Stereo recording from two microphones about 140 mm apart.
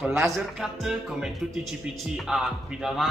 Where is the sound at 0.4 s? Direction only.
5° right (ahead or behind).